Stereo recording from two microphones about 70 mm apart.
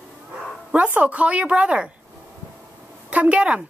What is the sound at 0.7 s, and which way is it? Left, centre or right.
A woman's voice, centre.